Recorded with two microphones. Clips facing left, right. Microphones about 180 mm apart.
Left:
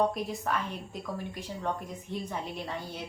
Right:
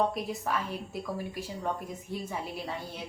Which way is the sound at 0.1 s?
5° right (ahead or behind).